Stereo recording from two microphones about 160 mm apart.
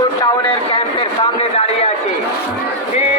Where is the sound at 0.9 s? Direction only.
35° left (ahead or behind).